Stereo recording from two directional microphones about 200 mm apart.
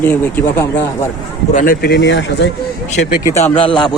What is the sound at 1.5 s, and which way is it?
Speech, 50° left (ahead or behind).